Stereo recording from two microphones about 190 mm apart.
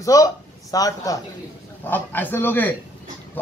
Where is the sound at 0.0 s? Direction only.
15° left (ahead or behind).